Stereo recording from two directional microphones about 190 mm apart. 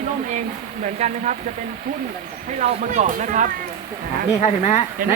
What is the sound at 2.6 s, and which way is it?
Speech, 35° right (ahead or behind).